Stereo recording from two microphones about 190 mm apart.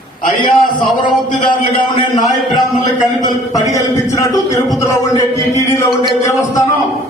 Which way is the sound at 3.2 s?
20° left (ahead or behind).